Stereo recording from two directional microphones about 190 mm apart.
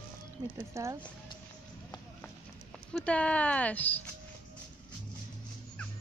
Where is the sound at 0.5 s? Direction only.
15° right (ahead or behind).